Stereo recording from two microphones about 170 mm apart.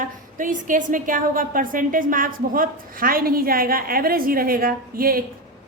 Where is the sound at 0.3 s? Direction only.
50° right (ahead or behind).